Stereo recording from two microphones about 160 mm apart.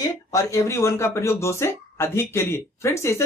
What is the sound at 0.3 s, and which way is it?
Speech, 20° left (ahead or behind).